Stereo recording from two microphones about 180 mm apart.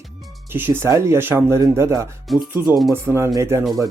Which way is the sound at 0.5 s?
10° right (ahead or behind).